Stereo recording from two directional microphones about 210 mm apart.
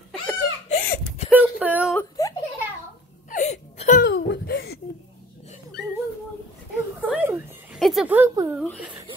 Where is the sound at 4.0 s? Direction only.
50° left (ahead or behind).